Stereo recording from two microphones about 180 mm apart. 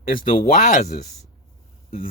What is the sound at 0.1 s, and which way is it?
Speech, 50° left (ahead or behind).